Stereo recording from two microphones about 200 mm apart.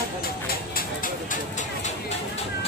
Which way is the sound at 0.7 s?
40° left (ahead or behind).